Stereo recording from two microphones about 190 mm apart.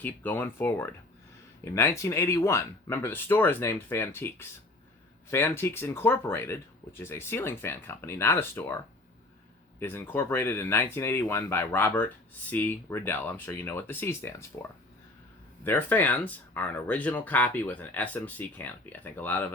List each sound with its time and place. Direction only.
0.0 s speech: 10° left (ahead or behind)
9.8 s speech: 10° left (ahead or behind)
15.6 s speech: 10° left (ahead or behind)